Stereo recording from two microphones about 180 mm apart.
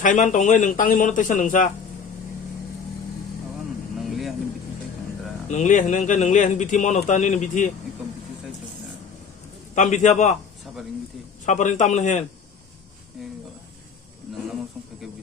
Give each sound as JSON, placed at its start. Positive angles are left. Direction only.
{"t": 0.0, "sound": "a man's voice", "side_deg": 45}
{"t": 3.9, "sound": "vehicle", "side_deg": 0}
{"t": 5.5, "sound": "a man's voice", "side_deg": 45}
{"t": 9.7, "sound": "a man's voice", "side_deg": 40}
{"t": 11.4, "sound": "a man's voice", "side_deg": 40}